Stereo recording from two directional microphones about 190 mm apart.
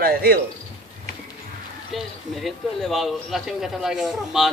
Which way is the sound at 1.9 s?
Centre (ahead or behind).